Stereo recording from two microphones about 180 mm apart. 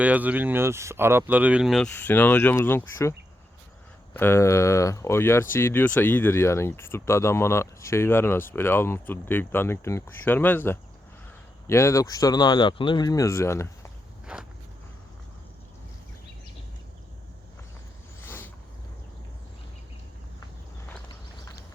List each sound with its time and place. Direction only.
0.0 s speech: 10° right (ahead or behind)
1.9 s speech: 10° left (ahead or behind)
14.3 s walk: 5° right (ahead or behind)
18.2 s vehicle: 10° left (ahead or behind)